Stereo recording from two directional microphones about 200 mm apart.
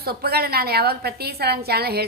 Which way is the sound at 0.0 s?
50° right (ahead or behind).